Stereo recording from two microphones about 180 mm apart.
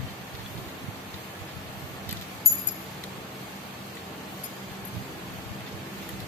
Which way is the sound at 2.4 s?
15° left (ahead or behind).